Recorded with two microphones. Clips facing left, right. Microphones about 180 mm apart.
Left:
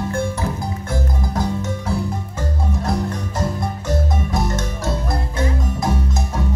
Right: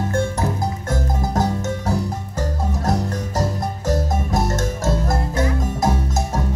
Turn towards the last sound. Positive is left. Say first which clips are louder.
# right 2 dB
turn(degrees=-45)  # may be behind; listen again after turning